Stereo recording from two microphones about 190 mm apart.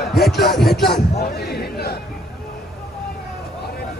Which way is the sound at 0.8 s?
55° left (ahead or behind).